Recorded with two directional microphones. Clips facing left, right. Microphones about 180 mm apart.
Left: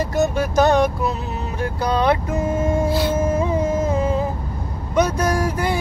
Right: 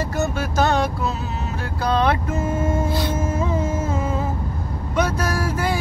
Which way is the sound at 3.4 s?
15° left (ahead or behind).